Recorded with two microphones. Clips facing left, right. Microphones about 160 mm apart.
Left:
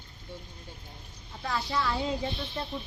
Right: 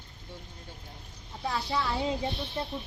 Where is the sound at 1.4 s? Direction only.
20° right (ahead or behind).